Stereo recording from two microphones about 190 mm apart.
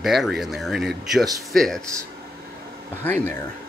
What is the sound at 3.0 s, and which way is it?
Speech, 10° left (ahead or behind).